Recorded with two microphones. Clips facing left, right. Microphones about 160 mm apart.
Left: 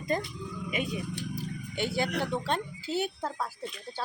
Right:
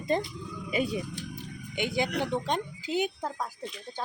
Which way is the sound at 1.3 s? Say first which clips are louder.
Right 1 dB; 15° right (ahead or behind).